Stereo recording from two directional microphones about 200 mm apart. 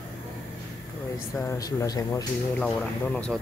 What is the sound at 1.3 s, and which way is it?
Speech, 15° left (ahead or behind).